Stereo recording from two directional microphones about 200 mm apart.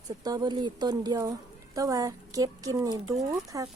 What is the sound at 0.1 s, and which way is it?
A woman's voice, 20° right (ahead or behind).